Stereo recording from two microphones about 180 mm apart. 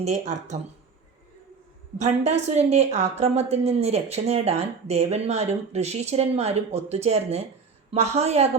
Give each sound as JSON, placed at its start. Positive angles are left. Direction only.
{"t": 0.0, "sound": "a woman's voice", "side_deg": -40}
{"t": 2.0, "sound": "a woman's voice", "side_deg": -40}